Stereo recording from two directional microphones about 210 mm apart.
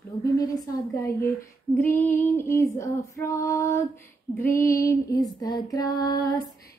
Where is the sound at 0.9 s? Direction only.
10° left (ahead or behind).